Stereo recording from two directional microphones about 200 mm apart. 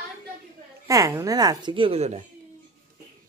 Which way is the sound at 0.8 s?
15° right (ahead or behind).